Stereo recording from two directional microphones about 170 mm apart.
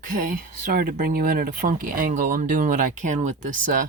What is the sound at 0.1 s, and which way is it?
Speech, 50° right (ahead or behind).